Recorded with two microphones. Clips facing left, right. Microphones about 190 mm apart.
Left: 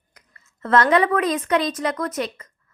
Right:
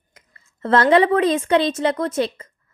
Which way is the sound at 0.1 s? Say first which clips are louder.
Right 2 dB; 30° right (ahead or behind).